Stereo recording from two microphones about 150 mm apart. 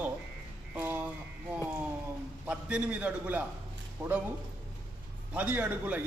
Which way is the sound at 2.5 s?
10° right (ahead or behind).